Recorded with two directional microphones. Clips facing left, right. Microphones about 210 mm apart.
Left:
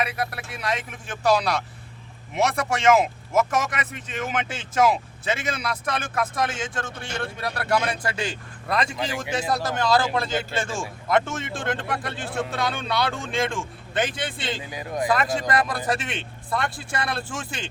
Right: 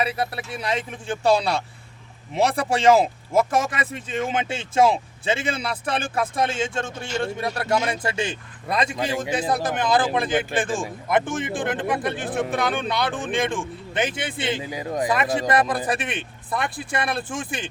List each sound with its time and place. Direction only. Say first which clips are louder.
0.0 s speech: right 3 dB; 30° right (ahead or behind)
14.7 s speech: right 3 dB; 30° right (ahead or behind)
15.0 s speech: even; 20° right (ahead or behind)